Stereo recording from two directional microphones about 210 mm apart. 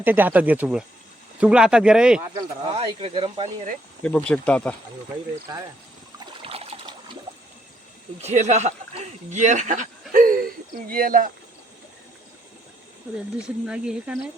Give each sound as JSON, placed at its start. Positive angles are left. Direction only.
{"t": 0.0, "sound": "speech", "side_deg": -10}
{"t": 2.7, "sound": "speech", "side_deg": -25}
{"t": 4.0, "sound": "speech", "side_deg": 5}
{"t": 5.5, "sound": "speech", "side_deg": -15}
{"t": 6.1, "sound": "trickle", "side_deg": -25}
{"t": 8.2, "sound": "speech", "side_deg": -35}
{"t": 13.4, "sound": "speech", "side_deg": -5}